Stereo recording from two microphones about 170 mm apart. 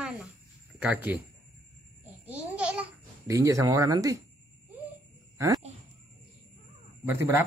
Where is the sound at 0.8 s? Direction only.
10° right (ahead or behind).